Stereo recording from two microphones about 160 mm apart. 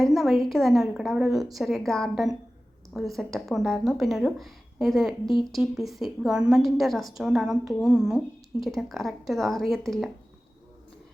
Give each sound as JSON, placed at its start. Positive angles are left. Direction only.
{"t": 0.0, "sound": "speech", "side_deg": 0}